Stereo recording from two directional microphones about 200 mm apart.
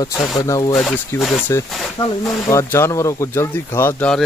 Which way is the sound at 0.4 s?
15° left (ahead or behind).